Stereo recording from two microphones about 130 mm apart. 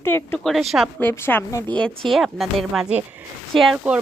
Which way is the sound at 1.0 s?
15° left (ahead or behind).